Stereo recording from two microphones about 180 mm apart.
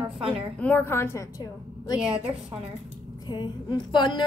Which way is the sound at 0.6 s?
10° left (ahead or behind).